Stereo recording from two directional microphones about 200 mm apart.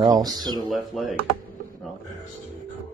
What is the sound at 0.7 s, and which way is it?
Speech, centre (ahead or behind).